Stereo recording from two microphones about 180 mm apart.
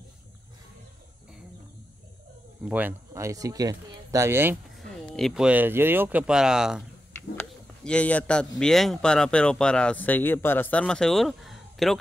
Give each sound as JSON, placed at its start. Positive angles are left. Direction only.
{"t": 2.7, "sound": "speech", "side_deg": -15}
{"t": 4.6, "sound": "speech", "side_deg": 0}
{"t": 7.2, "sound": "a man's voice", "side_deg": 5}